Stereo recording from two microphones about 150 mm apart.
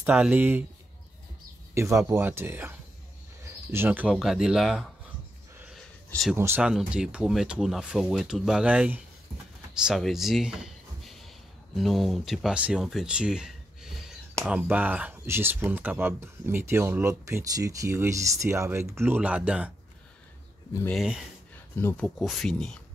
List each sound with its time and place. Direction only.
0.0 s speech: 10° right (ahead or behind)
1.8 s speech: 20° right (ahead or behind)
3.4 s cricket: 15° right (ahead or behind)
4.1 s speech: centre (ahead or behind)
6.3 s speech: 15° right (ahead or behind)
6.6 s speech: 5° right (ahead or behind)
20.9 s speech: centre (ahead or behind)
21.7 s speech: 10° left (ahead or behind)